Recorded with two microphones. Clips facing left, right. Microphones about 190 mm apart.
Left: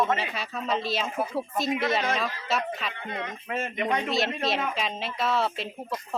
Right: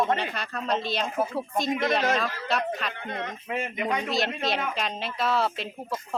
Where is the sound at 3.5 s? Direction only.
15° right (ahead or behind).